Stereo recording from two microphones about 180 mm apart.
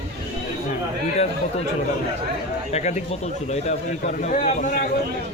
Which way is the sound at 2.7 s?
40° left (ahead or behind).